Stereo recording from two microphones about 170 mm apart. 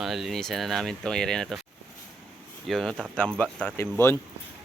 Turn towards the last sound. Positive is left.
turn(degrees=15)  # may be behind; listen again after turning